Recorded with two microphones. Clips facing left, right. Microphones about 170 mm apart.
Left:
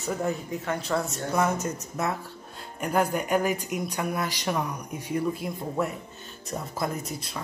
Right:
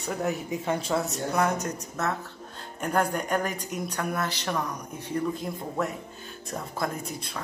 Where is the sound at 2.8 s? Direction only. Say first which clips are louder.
Left 1 dB; 5° left (ahead or behind).